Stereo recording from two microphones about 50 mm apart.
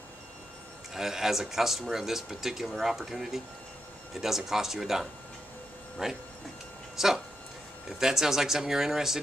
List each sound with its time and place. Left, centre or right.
0.9 s speech: centre